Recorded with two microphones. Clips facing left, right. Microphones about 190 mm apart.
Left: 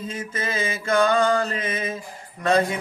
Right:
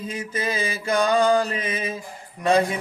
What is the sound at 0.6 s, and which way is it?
Mantra, 35° right (ahead or behind).